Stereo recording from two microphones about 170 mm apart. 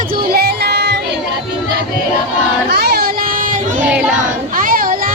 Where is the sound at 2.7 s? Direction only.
70° right (ahead or behind); by 3.8 s 50° right (ahead or behind).